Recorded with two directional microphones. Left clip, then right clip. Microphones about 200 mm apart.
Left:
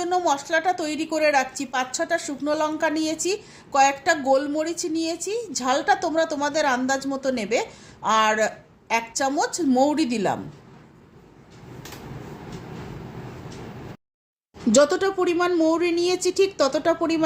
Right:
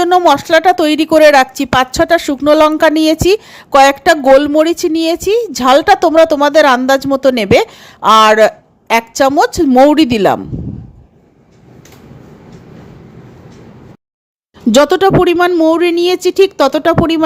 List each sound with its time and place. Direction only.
0.0 s speech: 45° right (ahead or behind)
14.7 s a woman's voice: 40° right (ahead or behind)